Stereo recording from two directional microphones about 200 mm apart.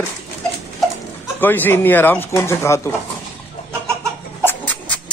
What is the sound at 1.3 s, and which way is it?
A man's voice, 10° left (ahead or behind).